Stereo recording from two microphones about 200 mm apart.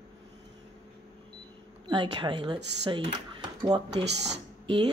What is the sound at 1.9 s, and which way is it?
Speech, 25° right (ahead or behind).